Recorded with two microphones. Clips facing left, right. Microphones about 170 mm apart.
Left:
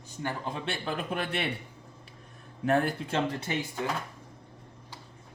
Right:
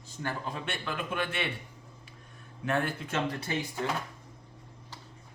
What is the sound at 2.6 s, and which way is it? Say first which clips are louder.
Speech: left 4 dB; 35° left (ahead or behind).